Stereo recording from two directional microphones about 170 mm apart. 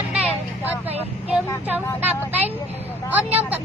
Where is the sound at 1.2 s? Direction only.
10° right (ahead or behind).